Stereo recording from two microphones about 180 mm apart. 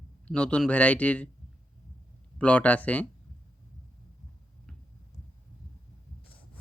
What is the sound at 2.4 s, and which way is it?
Speech, 5° left (ahead or behind).